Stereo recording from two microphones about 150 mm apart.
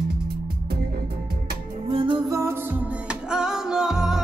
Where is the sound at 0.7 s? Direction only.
90° right.